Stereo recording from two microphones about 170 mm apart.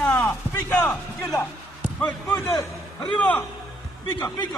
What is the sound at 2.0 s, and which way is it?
Basketball bounce, 15° left (ahead or behind).